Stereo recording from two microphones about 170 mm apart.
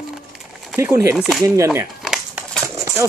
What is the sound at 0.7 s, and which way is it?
Speech, 15° right (ahead or behind).